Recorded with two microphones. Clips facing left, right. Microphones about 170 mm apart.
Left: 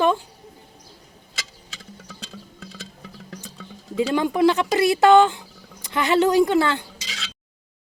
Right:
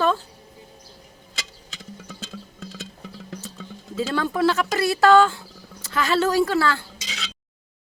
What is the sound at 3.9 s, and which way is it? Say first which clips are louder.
Speech: left 3 dB; 15° left (ahead or behind).